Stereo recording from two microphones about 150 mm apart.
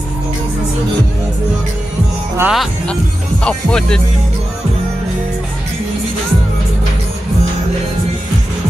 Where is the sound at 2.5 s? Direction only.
5° left (ahead or behind).